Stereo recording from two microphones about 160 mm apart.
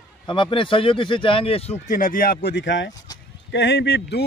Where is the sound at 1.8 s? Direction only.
55° left (ahead or behind).